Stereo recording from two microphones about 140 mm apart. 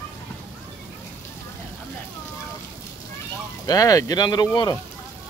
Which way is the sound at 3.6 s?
25° left (ahead or behind).